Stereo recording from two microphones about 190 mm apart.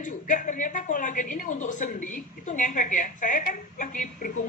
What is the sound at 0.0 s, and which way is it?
A woman's voice, 45° left (ahead or behind).